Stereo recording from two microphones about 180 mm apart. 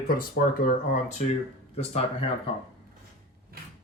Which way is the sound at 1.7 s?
35° left (ahead or behind).